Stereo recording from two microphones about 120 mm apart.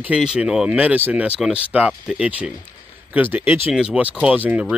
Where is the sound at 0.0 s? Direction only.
5° right (ahead or behind).